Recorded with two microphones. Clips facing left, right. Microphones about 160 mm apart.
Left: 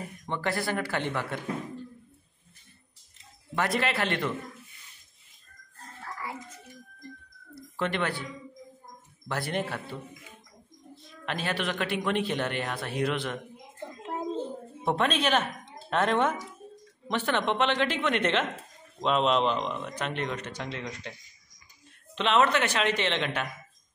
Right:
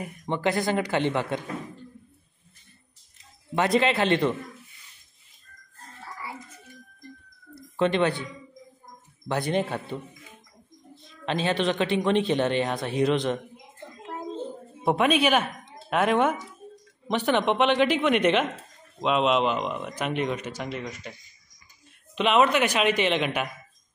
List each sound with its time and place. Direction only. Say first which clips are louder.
0.0 s speech: right 5 dB; 20° right (ahead or behind)
3.5 s speech: right 6 dB; 20° right (ahead or behind)
7.7 s speech: right 7 dB; 20° right (ahead or behind)
9.3 s speech: right 5 dB; 20° right (ahead or behind)
11.2 s speech: right 6 dB; 20° right (ahead or behind)
14.9 s speech: right 4 dB; 10° right (ahead or behind)
22.1 s speech: right 3 dB; 10° right (ahead or behind)